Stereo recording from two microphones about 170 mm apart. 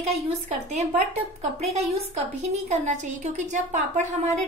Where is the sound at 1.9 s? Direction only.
40° right (ahead or behind).